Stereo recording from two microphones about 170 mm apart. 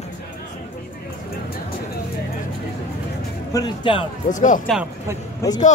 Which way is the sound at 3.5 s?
25° left (ahead or behind).